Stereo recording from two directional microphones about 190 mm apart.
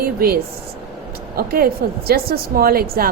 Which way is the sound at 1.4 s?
50° right (ahead or behind).